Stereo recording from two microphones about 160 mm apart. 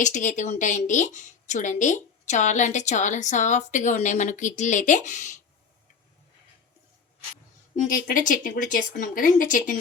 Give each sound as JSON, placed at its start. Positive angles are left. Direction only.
{"t": 0.0, "sound": "a woman's voice", "side_deg": 50}
{"t": 7.9, "sound": "speech", "side_deg": 60}